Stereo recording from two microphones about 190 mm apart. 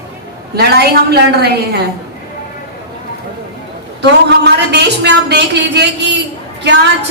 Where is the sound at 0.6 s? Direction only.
55° right (ahead or behind).